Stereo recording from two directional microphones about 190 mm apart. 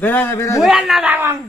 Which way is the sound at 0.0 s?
10° left (ahead or behind).